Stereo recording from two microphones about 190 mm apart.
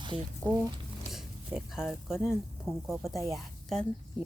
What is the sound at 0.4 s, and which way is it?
A woman's voice, 5° left (ahead or behind).